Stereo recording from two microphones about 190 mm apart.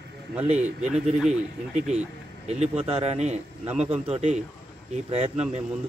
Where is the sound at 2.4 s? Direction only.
35° right (ahead or behind).